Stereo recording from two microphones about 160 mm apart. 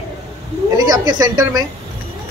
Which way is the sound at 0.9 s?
25° right (ahead or behind).